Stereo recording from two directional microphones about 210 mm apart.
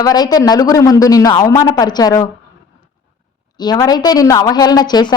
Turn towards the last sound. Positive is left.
turn(degrees=20)  # may be behind; listen again after turning